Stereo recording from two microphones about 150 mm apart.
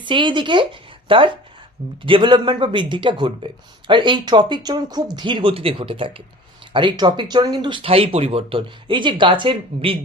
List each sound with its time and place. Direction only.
0.0 s a woman's voice: 35° right (ahead or behind)